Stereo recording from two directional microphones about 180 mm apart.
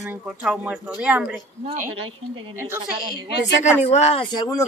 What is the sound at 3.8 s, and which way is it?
Speech, 35° left (ahead or behind).